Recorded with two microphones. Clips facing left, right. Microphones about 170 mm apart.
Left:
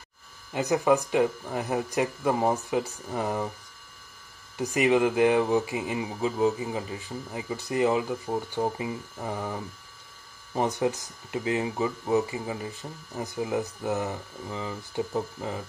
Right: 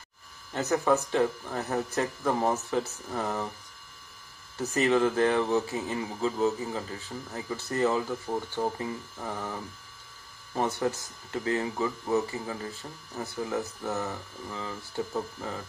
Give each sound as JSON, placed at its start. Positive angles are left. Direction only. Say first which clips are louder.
{"t": 0.5, "sound": "speech", "louder": "left 2 dB", "side_deg": 10}
{"t": 4.6, "sound": "speech", "louder": "left 2 dB", "side_deg": 15}